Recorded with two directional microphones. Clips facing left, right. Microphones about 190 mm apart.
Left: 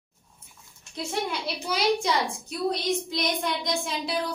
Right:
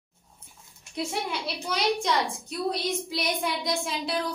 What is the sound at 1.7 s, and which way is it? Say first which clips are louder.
A woman's voice: left 2 dB; centre (ahead or behind).